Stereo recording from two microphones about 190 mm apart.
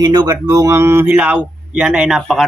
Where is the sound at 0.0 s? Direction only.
20° right (ahead or behind).